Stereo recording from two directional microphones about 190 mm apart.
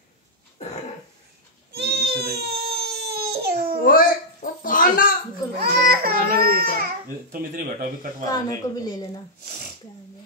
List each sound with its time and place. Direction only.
1.7 s baby cry: 55° right (ahead or behind)
3.8 s a sound: 50° left (ahead or behind)
5.6 s baby cry: 50° right (ahead or behind)
7.3 s speech: 45° right (ahead or behind)
8.3 s a woman's voice: 20° left (ahead or behind)